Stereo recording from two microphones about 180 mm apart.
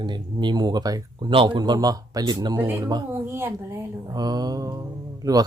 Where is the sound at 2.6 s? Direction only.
10° right (ahead or behind).